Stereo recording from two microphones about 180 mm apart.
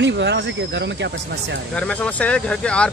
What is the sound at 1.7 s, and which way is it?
Speech, 5° left (ahead or behind).